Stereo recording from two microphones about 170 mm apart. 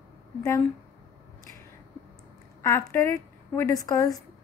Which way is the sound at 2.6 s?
15° left (ahead or behind).